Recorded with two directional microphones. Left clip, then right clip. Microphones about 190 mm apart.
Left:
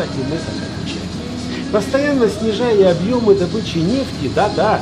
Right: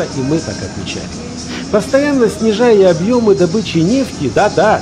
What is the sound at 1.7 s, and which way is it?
Speech, 25° right (ahead or behind).